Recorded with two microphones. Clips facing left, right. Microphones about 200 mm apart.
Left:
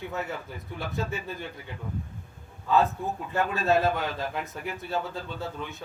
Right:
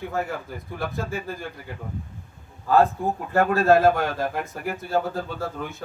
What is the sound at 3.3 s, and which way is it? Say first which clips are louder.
Speech: right 7 dB; 60° right (ahead or behind).